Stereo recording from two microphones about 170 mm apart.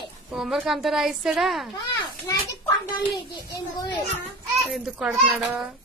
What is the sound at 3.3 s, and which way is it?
Speech, 25° left (ahead or behind).